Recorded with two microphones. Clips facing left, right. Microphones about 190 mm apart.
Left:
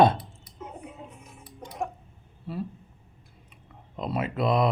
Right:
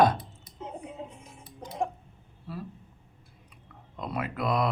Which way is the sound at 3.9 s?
25° left (ahead or behind).